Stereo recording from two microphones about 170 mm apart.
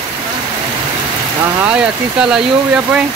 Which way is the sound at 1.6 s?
10° right (ahead or behind).